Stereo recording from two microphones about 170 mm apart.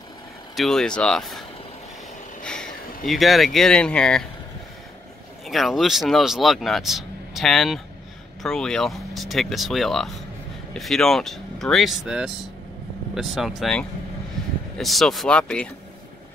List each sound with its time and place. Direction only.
0.6 s speech: centre (ahead or behind)
2.4 s a sound: 5° left (ahead or behind)
3.1 s speech: centre (ahead or behind)
5.5 s speech: centre (ahead or behind)